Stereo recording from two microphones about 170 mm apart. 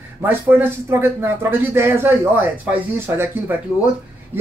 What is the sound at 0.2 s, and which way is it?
Speech, 10° right (ahead or behind).